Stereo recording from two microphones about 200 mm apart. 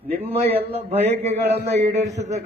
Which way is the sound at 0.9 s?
30° right (ahead or behind).